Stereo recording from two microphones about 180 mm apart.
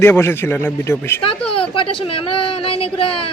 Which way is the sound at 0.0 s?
15° left (ahead or behind).